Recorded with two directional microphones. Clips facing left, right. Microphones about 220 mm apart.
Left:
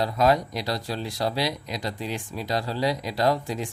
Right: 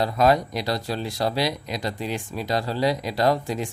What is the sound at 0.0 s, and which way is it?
Speech, 55° right (ahead or behind).